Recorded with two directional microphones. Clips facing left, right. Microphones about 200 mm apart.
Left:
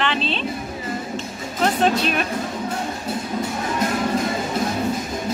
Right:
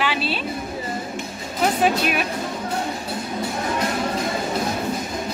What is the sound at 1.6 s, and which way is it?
Speech, 10° right (ahead or behind).